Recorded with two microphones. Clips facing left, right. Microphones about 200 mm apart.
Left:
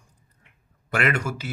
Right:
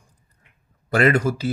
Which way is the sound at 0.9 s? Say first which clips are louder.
Right 7 dB; 35° right (ahead or behind).